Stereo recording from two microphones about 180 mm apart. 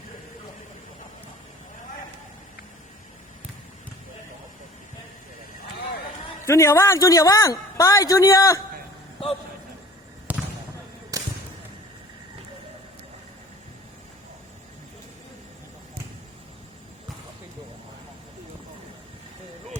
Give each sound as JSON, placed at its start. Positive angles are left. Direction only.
{"t": 6.4, "sound": "speech", "side_deg": 15}
{"t": 10.3, "sound": "basketball bounce", "side_deg": -10}